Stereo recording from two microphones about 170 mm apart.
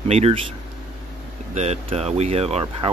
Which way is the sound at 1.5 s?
40° right (ahead or behind).